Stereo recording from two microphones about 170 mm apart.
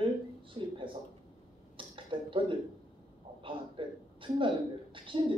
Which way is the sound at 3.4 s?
30° right (ahead or behind).